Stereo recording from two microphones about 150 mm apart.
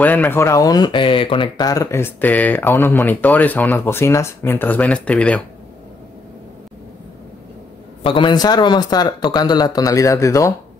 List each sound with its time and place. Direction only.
0.0 s speech: 10° left (ahead or behind)
8.0 s speech: 35° left (ahead or behind)